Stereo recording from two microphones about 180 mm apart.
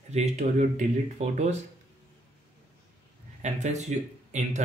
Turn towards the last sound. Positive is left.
turn(degrees=-40)  # may be behind; listen again after turning